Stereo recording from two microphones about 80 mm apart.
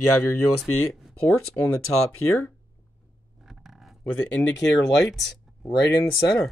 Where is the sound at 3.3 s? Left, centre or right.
Centre.